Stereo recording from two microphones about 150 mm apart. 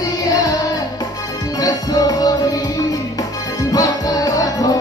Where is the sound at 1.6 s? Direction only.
25° left (ahead or behind).